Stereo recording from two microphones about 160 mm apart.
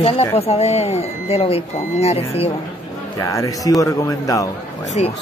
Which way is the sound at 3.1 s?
20° left (ahead or behind).